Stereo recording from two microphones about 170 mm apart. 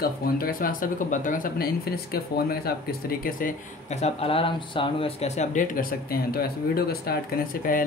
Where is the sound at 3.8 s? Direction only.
40° left (ahead or behind).